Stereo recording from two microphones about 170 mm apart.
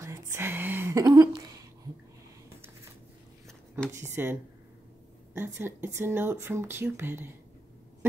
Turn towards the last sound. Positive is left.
turn(degrees=-15)  # may be behind; listen again after turning